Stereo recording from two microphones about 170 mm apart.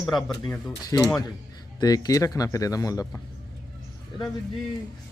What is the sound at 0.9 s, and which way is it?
Speech, 20° left (ahead or behind).